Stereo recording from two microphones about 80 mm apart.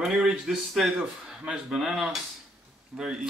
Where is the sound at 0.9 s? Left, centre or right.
Centre.